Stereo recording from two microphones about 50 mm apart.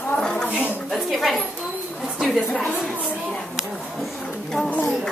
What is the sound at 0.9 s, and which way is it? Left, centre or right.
Speech, centre.